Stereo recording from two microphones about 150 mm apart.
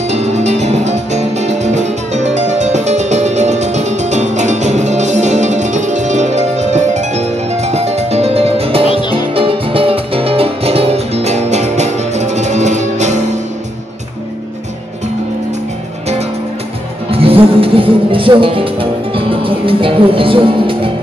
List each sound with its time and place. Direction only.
0.1 s music: 50° right (ahead or behind)
17.1 s music: 40° right (ahead or behind)